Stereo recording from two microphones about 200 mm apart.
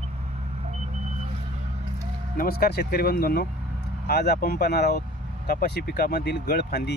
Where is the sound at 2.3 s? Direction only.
50° left (ahead or behind).